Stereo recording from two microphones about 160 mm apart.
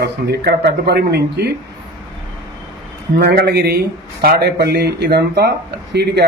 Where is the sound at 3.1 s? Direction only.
90° right.